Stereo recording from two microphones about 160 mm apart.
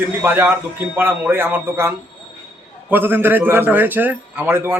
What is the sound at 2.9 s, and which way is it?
Speech, 10° right (ahead or behind).